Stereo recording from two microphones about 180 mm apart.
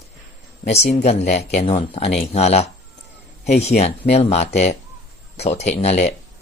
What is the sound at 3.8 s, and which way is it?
Speech, 35° left (ahead or behind).